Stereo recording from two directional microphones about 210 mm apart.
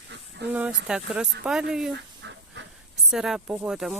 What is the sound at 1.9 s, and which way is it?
Dog, 60° right (ahead or behind).